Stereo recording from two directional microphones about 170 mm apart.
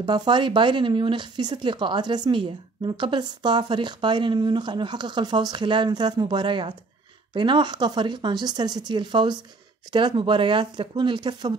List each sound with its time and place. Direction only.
0.0 s speech: 25° right (ahead or behind)